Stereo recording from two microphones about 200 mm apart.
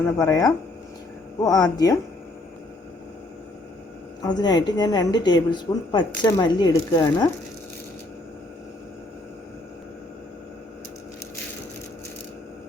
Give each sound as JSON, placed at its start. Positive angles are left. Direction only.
{"t": 0.0, "sound": "a woman's voice", "side_deg": 15}
{"t": 4.2, "sound": "a woman's voice", "side_deg": 20}